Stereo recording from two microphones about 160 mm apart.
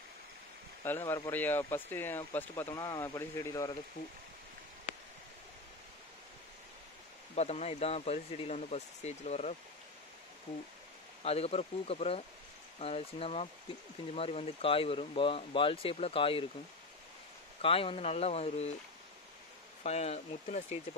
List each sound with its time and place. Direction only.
0.8 s speech: 15° left (ahead or behind)
7.3 s speech: 40° left (ahead or behind)
11.2 s speech: 40° left (ahead or behind)
17.6 s speech: 35° left (ahead or behind)
19.8 s speech: 45° left (ahead or behind)